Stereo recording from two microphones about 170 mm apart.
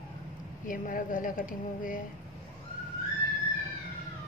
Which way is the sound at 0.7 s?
50° left (ahead or behind).